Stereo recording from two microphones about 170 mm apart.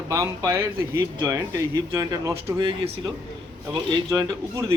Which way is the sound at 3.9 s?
20° right (ahead or behind).